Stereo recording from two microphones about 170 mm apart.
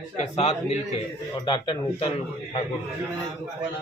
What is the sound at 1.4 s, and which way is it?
Speech, 30° left (ahead or behind).